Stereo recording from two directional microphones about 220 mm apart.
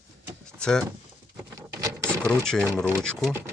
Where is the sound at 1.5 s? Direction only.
15° right (ahead or behind).